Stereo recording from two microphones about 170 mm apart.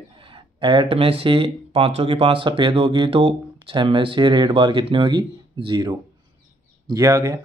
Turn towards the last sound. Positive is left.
turn(degrees=-20)  # may be behind; listen again after turning